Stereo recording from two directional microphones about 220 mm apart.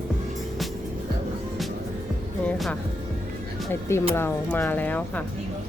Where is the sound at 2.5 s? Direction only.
Centre (ahead or behind).